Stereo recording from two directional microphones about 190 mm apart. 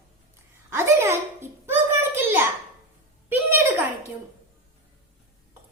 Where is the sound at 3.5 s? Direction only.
10° right (ahead or behind).